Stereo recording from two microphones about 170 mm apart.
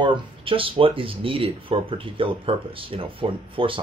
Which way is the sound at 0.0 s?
30° right (ahead or behind).